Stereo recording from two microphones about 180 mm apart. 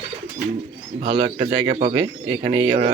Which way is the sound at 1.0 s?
30° right (ahead or behind).